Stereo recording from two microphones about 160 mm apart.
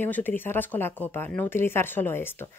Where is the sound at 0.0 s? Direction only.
10° left (ahead or behind).